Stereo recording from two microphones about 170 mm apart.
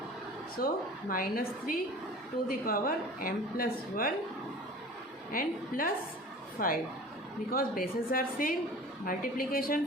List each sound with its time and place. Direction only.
0.6 s a woman's voice: 60° left (ahead or behind)
5.3 s a woman's voice: 55° left (ahead or behind)